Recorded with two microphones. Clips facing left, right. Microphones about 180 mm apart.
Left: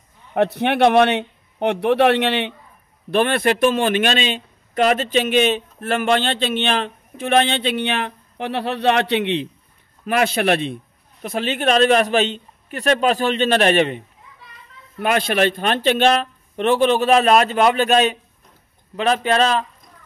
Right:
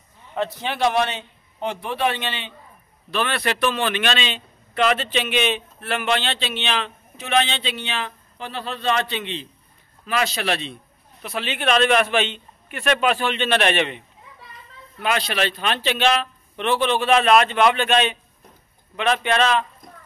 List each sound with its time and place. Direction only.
0.3 s a man's voice: 60° left (ahead or behind)
3.1 s a man's voice: 50° left (ahead or behind)